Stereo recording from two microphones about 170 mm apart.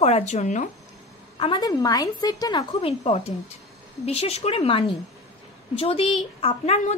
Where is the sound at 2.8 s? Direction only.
35° left (ahead or behind).